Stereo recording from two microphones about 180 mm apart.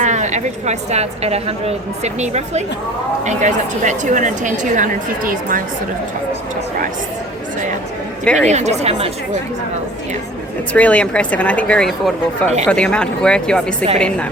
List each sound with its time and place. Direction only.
0.0 s a woman's voice: 40° right (ahead or behind)
8.2 s speech: 5° left (ahead or behind)
8.4 s a woman's voice: 40° right (ahead or behind)
10.8 s speech: 5° left (ahead or behind)